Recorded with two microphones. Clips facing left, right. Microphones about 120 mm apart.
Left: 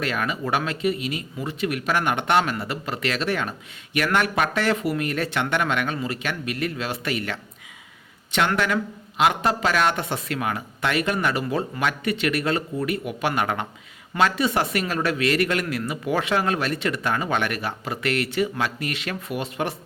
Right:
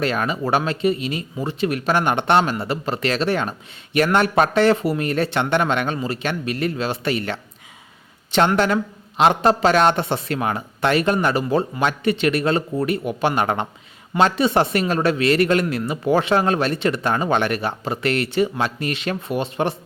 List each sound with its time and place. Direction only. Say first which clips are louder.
0.0 s speech: right 4 dB; 30° right (ahead or behind)